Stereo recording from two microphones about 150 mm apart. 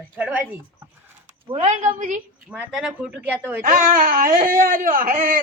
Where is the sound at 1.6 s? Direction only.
55° right (ahead or behind).